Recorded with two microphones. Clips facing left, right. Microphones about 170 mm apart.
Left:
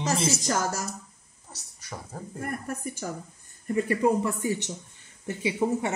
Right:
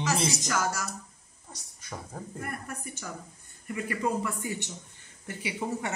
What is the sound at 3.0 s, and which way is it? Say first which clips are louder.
Speech: left 6 dB; 35° left (ahead or behind).